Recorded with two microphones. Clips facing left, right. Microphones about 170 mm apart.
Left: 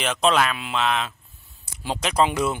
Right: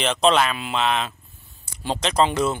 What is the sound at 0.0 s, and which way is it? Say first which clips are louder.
A man's voice: right 2 dB; 5° left (ahead or behind).